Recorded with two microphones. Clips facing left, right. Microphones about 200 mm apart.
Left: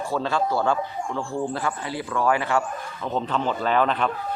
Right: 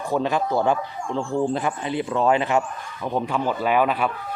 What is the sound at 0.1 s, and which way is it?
Speech, 15° right (ahead or behind).